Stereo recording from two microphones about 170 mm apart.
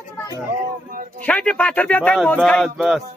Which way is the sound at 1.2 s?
5° left (ahead or behind).